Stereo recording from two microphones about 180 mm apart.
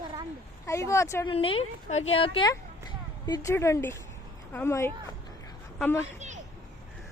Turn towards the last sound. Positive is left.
turn(degrees=-40)  # may be behind; listen again after turning